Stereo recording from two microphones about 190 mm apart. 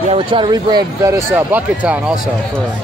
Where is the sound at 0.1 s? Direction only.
25° right (ahead or behind); by 2.1 s 5° right (ahead or behind).